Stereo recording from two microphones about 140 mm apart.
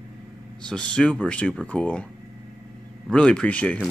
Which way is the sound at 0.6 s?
5° left (ahead or behind).